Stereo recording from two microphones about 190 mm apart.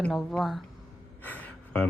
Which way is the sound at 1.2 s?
10° left (ahead or behind).